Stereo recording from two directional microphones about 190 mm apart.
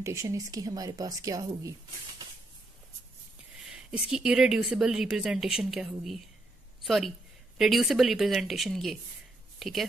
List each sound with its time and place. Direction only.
0.0 s speech: 15° right (ahead or behind)
3.6 s a woman's voice: 5° right (ahead or behind)